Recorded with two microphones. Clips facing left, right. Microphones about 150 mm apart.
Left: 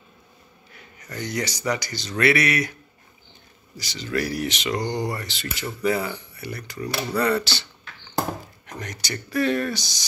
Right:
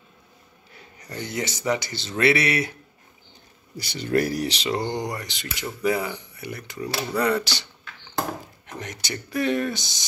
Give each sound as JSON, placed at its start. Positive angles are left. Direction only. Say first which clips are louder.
{"t": 1.1, "sound": "speech", "louder": "left 1 dB", "side_deg": -25}
{"t": 3.7, "sound": "speech", "louder": "right 4 dB", "side_deg": -55}
{"t": 8.6, "sound": "speech", "louder": "left 1 dB", "side_deg": -20}